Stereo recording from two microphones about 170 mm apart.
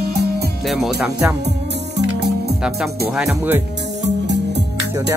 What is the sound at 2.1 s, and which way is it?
Music, 80° right.